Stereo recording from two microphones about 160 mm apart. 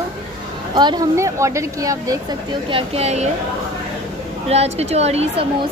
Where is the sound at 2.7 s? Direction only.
35° right (ahead or behind).